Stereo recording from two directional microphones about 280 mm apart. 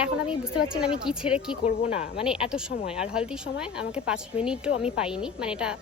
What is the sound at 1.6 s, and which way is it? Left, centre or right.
Speech, left.